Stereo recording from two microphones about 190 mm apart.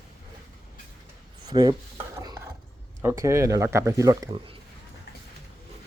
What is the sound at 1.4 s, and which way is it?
Chopping, 20° right (ahead or behind).